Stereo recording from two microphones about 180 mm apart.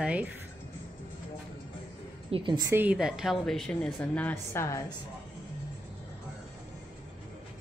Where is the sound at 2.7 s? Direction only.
5° right (ahead or behind); by 5.0 s 15° left (ahead or behind).